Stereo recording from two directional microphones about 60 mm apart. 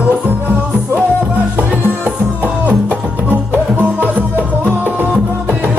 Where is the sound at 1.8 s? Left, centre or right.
Right.